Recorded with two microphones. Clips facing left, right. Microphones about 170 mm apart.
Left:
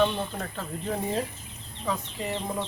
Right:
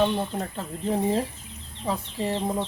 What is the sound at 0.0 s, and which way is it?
Speech, 25° right (ahead or behind).